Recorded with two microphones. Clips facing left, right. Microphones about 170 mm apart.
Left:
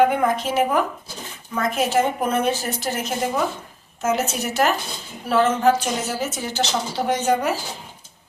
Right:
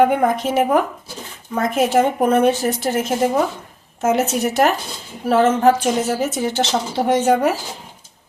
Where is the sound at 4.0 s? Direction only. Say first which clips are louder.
Right 5 dB; 55° right (ahead or behind).